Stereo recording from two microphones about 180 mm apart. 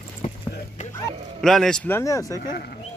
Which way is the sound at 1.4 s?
5° left (ahead or behind).